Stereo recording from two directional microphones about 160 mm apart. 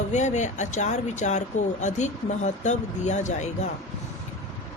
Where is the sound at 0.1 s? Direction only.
45° left (ahead or behind).